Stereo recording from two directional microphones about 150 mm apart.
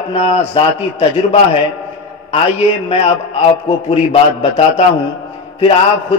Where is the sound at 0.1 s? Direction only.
40° left (ahead or behind).